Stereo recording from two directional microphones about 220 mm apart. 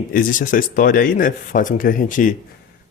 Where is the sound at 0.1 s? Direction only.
40° left (ahead or behind).